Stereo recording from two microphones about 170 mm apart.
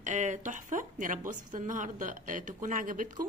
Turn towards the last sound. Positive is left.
turn(degrees=-50)  # may be behind; listen again after turning